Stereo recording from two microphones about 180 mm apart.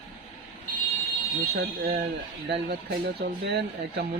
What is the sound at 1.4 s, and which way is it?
Speech, 55° right (ahead or behind).